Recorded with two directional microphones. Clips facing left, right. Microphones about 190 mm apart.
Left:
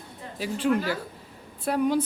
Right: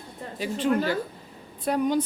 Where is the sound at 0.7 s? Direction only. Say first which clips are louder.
Right 1 dB; 40° right (ahead or behind).